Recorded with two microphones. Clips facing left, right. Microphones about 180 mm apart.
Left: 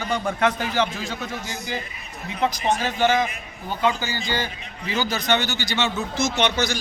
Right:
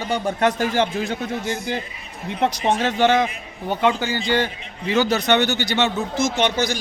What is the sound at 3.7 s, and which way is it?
A man's voice, 65° right (ahead or behind).